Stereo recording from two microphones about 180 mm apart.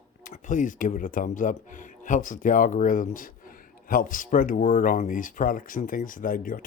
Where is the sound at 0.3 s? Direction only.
45° left (ahead or behind).